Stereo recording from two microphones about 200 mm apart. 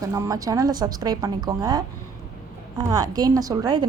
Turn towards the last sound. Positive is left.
turn(degrees=-20)  # may be behind; listen again after turning